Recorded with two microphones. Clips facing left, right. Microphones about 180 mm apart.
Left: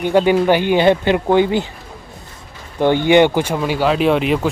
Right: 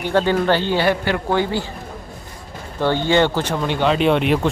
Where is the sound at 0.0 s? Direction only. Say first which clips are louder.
Left 4 dB; 15° left (ahead or behind).